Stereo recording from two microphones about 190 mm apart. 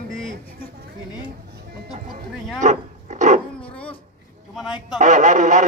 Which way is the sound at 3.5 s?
5° left (ahead or behind).